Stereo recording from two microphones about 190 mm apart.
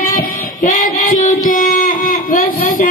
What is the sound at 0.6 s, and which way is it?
Child singing, 45° left (ahead or behind).